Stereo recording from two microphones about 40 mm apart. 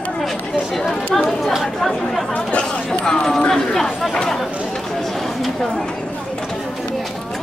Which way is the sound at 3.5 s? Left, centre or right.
Centre.